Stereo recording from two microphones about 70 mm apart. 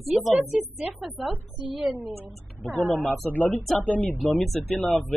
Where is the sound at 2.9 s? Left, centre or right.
Left.